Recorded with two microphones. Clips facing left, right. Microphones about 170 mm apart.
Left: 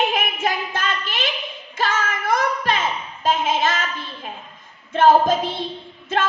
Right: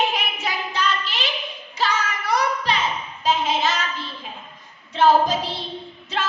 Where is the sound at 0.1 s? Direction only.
50° left (ahead or behind).